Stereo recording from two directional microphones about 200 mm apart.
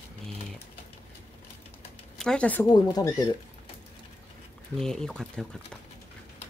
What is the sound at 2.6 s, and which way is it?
Speech, 20° left (ahead or behind).